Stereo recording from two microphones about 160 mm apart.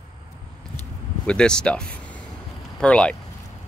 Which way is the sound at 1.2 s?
5° left (ahead or behind).